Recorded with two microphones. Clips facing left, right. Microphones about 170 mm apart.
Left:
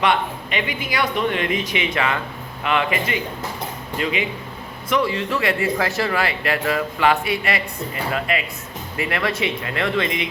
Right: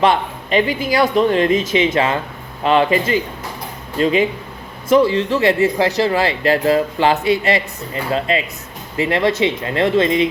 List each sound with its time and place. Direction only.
0.0 s speech: 35° right (ahead or behind)